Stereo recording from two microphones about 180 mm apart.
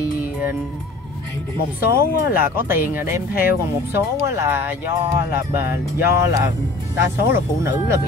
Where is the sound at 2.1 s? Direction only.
55° left (ahead or behind).